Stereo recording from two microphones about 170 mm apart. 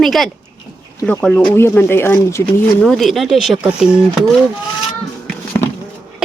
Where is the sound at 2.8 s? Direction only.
Centre (ahead or behind).